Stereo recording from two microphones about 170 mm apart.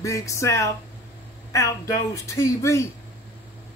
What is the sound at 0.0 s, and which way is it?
A woman's voice, 20° left (ahead or behind).